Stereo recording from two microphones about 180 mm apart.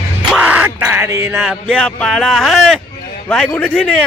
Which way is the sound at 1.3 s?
Centre (ahead or behind).